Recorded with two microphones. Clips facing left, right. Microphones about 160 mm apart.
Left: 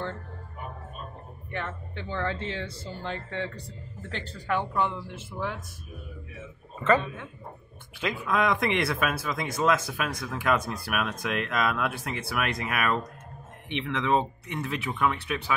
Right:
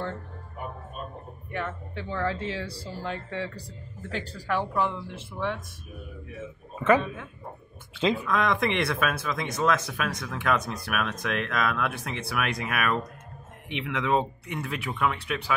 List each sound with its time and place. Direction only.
1.5 s speech: 5° right (ahead or behind)
2.6 s speech: 20° left (ahead or behind)
2.9 s speech: 5° right (ahead or behind)
6.8 s speech: centre (ahead or behind)
8.3 s speech: 5° left (ahead or behind)